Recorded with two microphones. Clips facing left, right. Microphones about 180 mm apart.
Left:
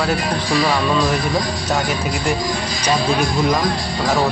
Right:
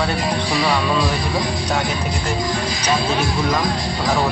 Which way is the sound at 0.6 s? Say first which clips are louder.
Left 1 dB; centre (ahead or behind).